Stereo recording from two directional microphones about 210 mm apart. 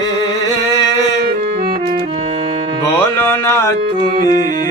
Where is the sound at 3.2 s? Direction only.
15° left (ahead or behind).